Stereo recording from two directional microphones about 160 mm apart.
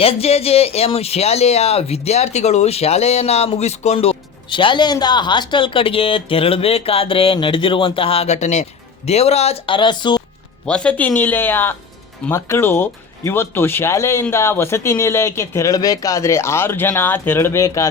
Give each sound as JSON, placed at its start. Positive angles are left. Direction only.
{"t": 0.0, "sound": "speech", "side_deg": 40}
{"t": 10.7, "sound": "speech", "side_deg": 5}